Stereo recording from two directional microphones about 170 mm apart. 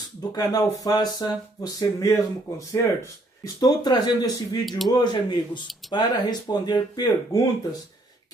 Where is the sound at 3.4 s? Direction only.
25° left (ahead or behind).